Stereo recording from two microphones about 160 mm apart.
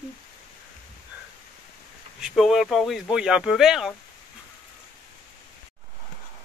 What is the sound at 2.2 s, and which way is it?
Speech, centre (ahead or behind).